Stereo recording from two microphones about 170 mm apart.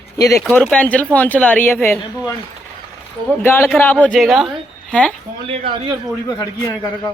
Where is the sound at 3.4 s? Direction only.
15° left (ahead or behind).